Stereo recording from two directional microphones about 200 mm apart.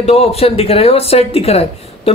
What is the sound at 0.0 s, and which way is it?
A man's voice, 30° left (ahead or behind).